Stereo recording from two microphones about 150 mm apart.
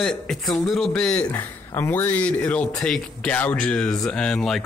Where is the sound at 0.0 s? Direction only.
Centre (ahead or behind).